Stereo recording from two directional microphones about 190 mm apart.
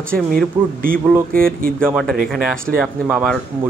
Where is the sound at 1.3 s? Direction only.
50° right (ahead or behind).